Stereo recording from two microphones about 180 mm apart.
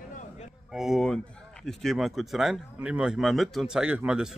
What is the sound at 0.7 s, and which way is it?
Speech, centre (ahead or behind).